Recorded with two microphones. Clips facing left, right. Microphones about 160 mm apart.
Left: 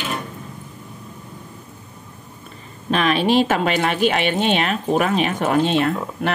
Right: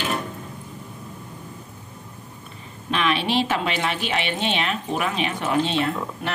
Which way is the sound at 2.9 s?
45° left (ahead or behind).